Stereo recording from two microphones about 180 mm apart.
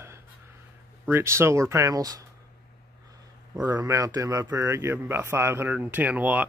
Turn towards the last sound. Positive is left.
turn(degrees=-10)  # may be behind; listen again after turning